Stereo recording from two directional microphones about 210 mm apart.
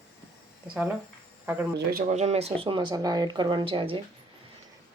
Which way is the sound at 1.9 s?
40° right (ahead or behind).